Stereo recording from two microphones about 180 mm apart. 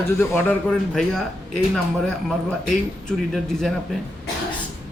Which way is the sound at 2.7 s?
Centre (ahead or behind).